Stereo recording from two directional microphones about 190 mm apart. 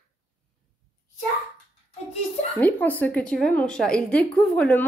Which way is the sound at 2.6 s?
10° left (ahead or behind).